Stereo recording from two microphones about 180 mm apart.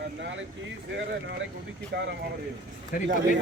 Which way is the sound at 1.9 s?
70° right (ahead or behind).